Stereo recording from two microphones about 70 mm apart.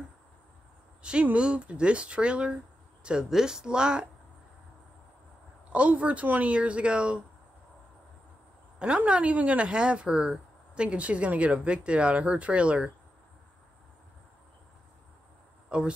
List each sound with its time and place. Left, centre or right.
1.0 s speech: centre
5.7 s speech: centre
8.7 s speech: centre
15.7 s speech: centre